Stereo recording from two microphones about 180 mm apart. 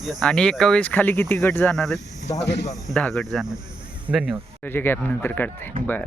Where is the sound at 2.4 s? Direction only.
75° left (ahead or behind).